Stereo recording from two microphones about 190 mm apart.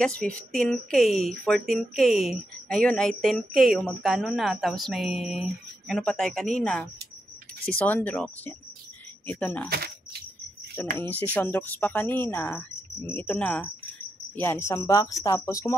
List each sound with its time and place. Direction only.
0.0 s speech: 5° left (ahead or behind)
9.7 s speech: 55° right (ahead or behind)
10.8 s speech: 10° left (ahead or behind)